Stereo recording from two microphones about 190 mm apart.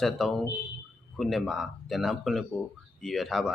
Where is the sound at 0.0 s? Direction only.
Centre (ahead or behind).